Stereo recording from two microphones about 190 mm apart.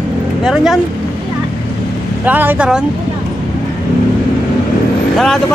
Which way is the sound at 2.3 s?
10° right (ahead or behind).